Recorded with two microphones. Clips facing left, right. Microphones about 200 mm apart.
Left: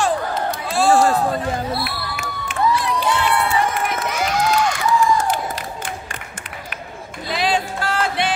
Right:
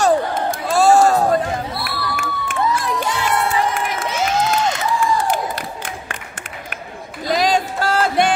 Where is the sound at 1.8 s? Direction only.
50° right (ahead or behind).